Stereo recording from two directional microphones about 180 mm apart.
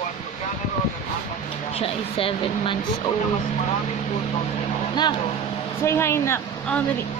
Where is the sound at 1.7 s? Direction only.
30° left (ahead or behind).